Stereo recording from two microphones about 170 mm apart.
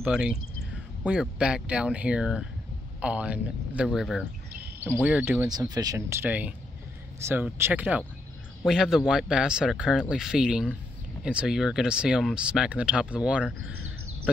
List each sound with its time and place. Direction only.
0.0 s speech: 5° right (ahead or behind)
4.7 s speech: 10° right (ahead or behind)
5.5 s speech: 20° right (ahead or behind); by 13.7 s 5° right (ahead or behind)